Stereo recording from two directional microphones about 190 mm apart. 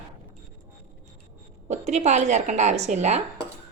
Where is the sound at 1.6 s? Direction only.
35° right (ahead or behind).